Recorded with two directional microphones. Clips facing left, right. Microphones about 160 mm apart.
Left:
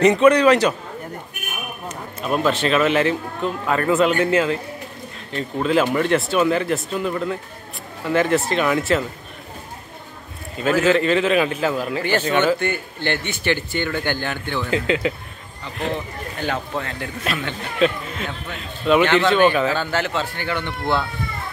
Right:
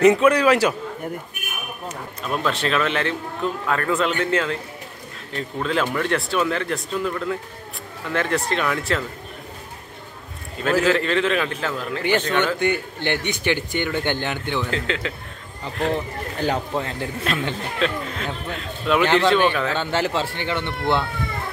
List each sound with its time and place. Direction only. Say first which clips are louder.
0.0 s speech: left 2 dB; 5° right (ahead or behind)
2.2 s a man's voice: left 4 dB; 5° left (ahead or behind)
10.6 s a man's voice: left 2 dB; 5° left (ahead or behind)
12.5 s a man's voice: right 2 dB; 15° right (ahead or behind)
14.6 s a man's voice: left 4 dB; 10° left (ahead or behind)
16.4 s a man's voice: right 2 dB; 35° right (ahead or behind)
17.7 s speech: left 6 dB; 5° left (ahead or behind)
19.8 s speech: even; 30° right (ahead or behind)